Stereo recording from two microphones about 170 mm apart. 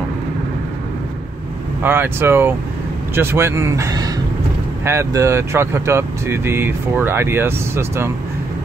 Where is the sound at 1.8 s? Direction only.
10° right (ahead or behind).